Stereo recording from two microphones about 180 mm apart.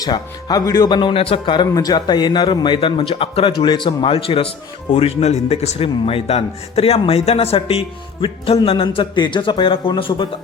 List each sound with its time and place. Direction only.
0.0 s a man's voice: 20° left (ahead or behind)